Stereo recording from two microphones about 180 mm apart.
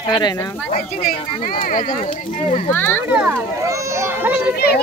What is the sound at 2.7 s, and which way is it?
Speech, 10° left (ahead or behind).